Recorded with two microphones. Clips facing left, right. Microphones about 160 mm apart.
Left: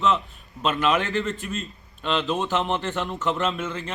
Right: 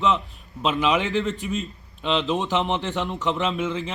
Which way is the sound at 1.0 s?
20° right (ahead or behind).